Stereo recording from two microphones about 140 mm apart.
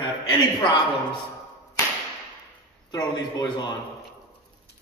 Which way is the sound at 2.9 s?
25° left (ahead or behind).